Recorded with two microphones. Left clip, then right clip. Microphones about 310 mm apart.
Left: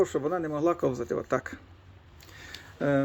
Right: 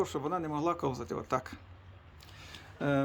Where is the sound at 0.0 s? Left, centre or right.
Centre.